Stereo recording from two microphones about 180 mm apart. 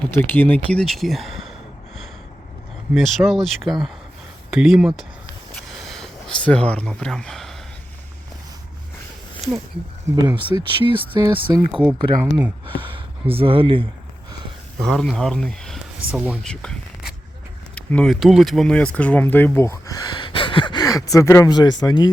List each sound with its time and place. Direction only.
0.2 s speech: 10° left (ahead or behind)
2.9 s speech: centre (ahead or behind)
5.5 s a sound: centre (ahead or behind)
9.4 s speech: centre (ahead or behind)
10.2 s speech: 25° right (ahead or behind)
11.7 s speech: 5° right (ahead or behind)
12.8 s speech: 30° right (ahead or behind)
14.8 s speech: centre (ahead or behind)
16.5 s a sound: 5° left (ahead or behind)
17.7 s speech: 5° left (ahead or behind); by 22.1 s 25° left (ahead or behind)